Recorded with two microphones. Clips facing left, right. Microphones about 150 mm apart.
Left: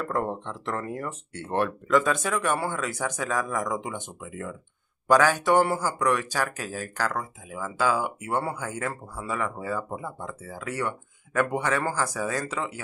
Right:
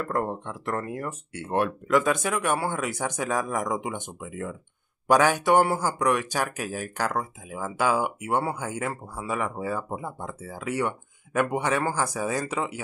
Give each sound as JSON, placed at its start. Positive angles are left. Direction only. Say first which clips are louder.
{"t": 0.0, "sound": "speech", "louder": "even", "side_deg": -5}